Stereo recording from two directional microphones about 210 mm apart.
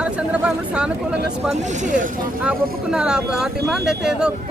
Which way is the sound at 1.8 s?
40° right (ahead or behind).